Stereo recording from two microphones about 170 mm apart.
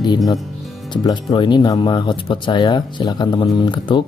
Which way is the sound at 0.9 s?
25° left (ahead or behind).